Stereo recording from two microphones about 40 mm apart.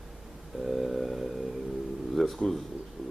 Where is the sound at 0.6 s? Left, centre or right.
Centre.